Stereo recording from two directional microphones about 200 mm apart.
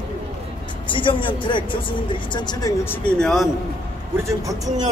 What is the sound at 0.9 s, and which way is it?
Speech, 25° left (ahead or behind).